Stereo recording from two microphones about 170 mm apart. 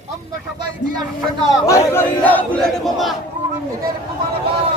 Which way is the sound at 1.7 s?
15° left (ahead or behind).